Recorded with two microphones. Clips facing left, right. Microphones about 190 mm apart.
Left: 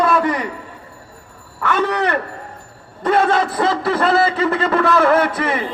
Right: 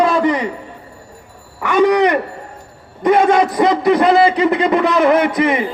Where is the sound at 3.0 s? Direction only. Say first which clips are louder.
Right 4 dB; 15° right (ahead or behind).